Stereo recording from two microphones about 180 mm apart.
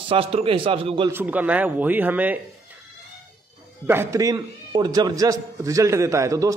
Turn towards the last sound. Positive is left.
turn(degrees=-15)  # may be behind; listen again after turning